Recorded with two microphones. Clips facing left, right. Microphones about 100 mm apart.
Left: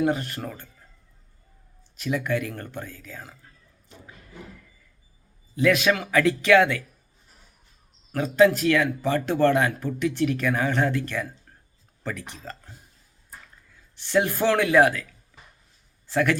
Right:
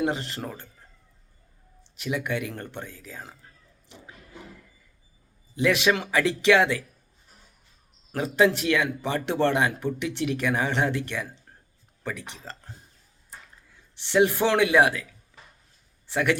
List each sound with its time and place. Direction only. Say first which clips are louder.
0.0 s a man's voice: left 3 dB; 20° right (ahead or behind)
2.0 s a man's voice: left 3 dB; 15° right (ahead or behind)
5.5 s a man's voice: left 2 dB; 20° right (ahead or behind)
8.1 s a man's voice: left 3 dB; 20° right (ahead or behind)
13.9 s a man's voice: right 2 dB; 20° right (ahead or behind)
16.0 s speech: left 2 dB; 15° right (ahead or behind)